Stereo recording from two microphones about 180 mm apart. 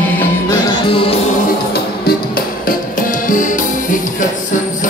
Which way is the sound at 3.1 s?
45° left (ahead or behind).